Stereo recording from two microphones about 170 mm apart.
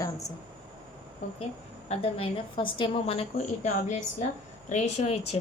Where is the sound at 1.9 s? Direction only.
35° left (ahead or behind).